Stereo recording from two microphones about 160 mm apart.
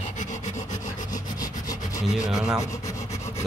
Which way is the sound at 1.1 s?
25° left (ahead or behind).